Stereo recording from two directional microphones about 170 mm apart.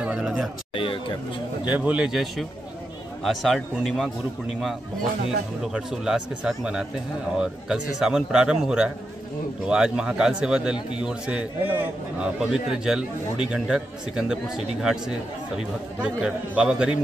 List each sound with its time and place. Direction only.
0.0 s speech: 5° right (ahead or behind)
0.7 s speech: 30° left (ahead or behind)
1.7 s a man's voice: 10° right (ahead or behind)
5.7 s a man's voice: 5° right (ahead or behind)